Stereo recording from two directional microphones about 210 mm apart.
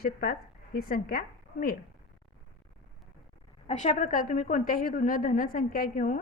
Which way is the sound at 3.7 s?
35° left (ahead or behind).